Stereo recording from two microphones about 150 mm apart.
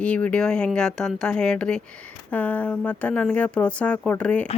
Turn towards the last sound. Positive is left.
turn(degrees=10)  # may be behind; listen again after turning